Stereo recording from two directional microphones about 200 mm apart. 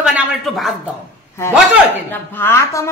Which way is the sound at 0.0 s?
5° right (ahead or behind).